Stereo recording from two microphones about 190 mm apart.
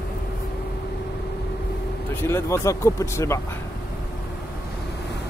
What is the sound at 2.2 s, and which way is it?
Speech, 15° left (ahead or behind).